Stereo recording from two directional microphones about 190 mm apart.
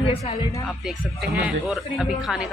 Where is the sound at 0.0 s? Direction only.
30° left (ahead or behind).